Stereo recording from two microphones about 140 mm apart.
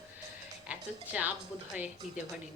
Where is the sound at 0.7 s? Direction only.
10° right (ahead or behind).